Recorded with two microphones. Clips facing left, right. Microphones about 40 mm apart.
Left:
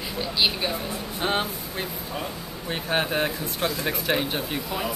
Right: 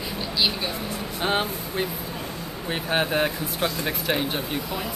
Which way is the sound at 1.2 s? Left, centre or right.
Centre.